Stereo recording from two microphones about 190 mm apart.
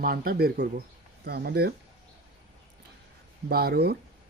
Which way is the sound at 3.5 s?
55° right (ahead or behind).